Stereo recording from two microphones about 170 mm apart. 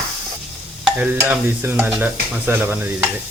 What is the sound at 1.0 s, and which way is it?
Stir, 10° right (ahead or behind).